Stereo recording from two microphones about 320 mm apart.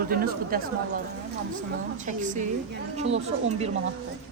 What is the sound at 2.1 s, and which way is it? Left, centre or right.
Speech, right.